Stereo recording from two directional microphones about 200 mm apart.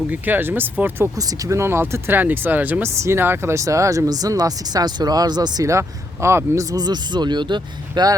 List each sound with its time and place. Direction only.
0.1 s speech: 10° right (ahead or behind)